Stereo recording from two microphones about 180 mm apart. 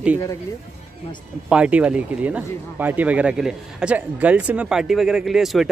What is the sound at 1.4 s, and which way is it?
Speech, 5° right (ahead or behind).